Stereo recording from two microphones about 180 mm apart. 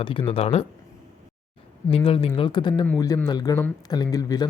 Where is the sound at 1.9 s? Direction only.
30° left (ahead or behind).